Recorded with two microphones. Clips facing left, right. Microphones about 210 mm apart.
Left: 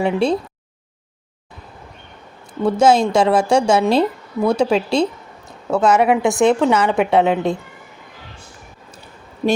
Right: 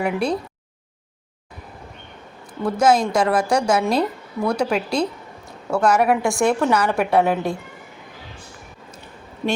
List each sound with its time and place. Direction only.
0.0 s a woman's voice: 25° left (ahead or behind)
2.6 s a woman's voice: 25° left (ahead or behind)
9.4 s speech: 35° left (ahead or behind)